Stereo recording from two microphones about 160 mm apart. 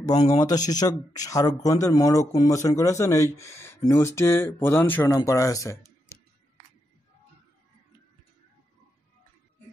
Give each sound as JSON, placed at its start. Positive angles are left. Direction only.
{"t": 0.0, "sound": "a man's voice", "side_deg": 25}